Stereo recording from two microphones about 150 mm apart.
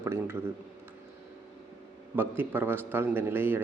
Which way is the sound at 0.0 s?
15° right (ahead or behind).